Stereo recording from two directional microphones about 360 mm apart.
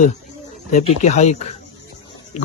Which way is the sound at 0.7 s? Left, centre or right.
Centre.